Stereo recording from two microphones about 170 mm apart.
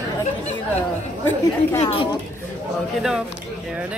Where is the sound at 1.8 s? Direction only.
35° left (ahead or behind).